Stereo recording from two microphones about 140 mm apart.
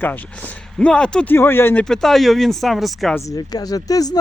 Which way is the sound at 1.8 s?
5° left (ahead or behind).